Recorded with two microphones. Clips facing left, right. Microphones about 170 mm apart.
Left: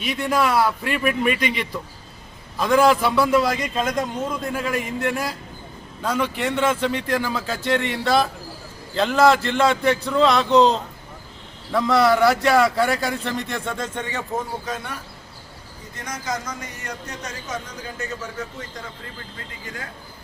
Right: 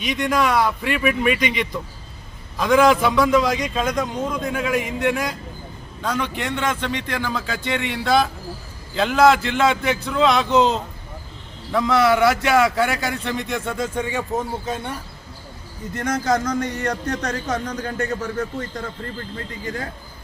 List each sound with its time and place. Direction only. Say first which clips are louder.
0.0 s a man's voice: right 1 dB; 5° left (ahead or behind); by 14.4 s 15° right (ahead or behind)
14.6 s speech: right 3 dB; 25° right (ahead or behind)
16.0 s a man's voice: right 8 dB; 60° right (ahead or behind)
19.6 s speech: right 7 dB; 35° right (ahead or behind)